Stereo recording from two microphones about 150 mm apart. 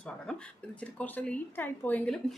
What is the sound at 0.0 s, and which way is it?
A woman's voice, 10° left (ahead or behind).